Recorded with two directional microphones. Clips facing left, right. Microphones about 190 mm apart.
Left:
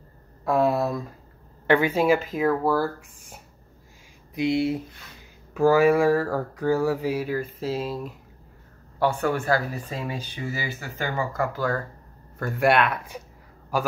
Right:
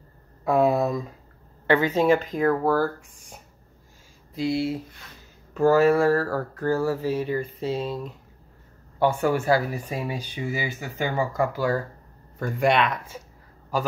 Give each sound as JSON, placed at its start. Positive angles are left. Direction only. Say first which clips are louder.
{"t": 0.5, "sound": "speech", "louder": "right 1 dB", "side_deg": 0}
{"t": 4.4, "sound": "speech", "louder": "left 2 dB", "side_deg": 20}
{"t": 5.5, "sound": "speech", "louder": "even", "side_deg": 10}
{"t": 9.3, "sound": "speech", "louder": "right 2 dB", "side_deg": -10}
{"t": 12.4, "sound": "speech", "louder": "left 1 dB", "side_deg": 5}